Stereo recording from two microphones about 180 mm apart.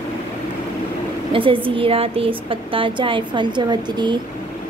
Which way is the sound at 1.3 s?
30° right (ahead or behind).